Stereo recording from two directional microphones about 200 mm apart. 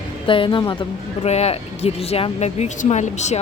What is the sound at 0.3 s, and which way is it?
Speech, 25° left (ahead or behind).